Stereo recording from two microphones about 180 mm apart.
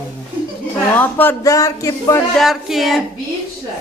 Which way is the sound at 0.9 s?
10° left (ahead or behind).